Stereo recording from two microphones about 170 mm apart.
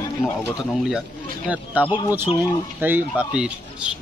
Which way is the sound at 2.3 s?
35° left (ahead or behind).